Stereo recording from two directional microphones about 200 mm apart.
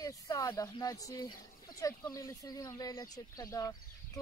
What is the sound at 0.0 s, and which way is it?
Speech, 15° left (ahead or behind).